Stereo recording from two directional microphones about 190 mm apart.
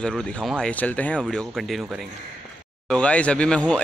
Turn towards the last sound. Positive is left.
turn(degrees=5)  # may be behind; listen again after turning